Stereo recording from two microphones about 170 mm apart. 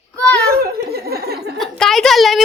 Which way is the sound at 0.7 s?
65° right (ahead or behind).